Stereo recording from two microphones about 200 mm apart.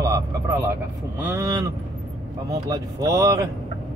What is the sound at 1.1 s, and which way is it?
Speech, 10° right (ahead or behind).